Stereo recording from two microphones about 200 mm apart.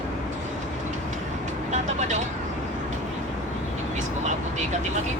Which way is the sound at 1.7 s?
35° right (ahead or behind).